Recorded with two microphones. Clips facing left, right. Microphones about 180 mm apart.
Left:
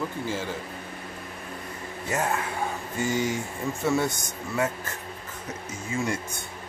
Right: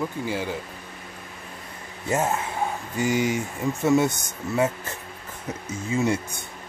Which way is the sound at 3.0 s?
15° right (ahead or behind).